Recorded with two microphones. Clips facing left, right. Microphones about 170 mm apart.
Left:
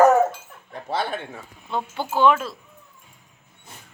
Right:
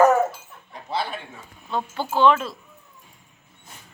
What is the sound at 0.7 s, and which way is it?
Chuckle, 50° left (ahead or behind).